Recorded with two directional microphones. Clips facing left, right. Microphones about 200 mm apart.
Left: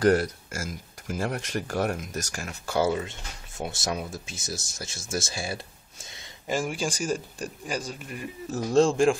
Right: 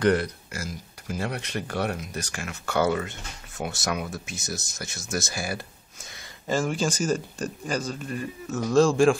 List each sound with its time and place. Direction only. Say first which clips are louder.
0.0 s speech: left 1 dB; 40° left (ahead or behind)
6.4 s speech: right 3 dB; 15° left (ahead or behind)
8.5 s speech: right 1 dB; 30° left (ahead or behind)